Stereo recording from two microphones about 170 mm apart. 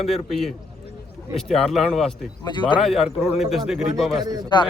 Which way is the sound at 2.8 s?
Centre (ahead or behind).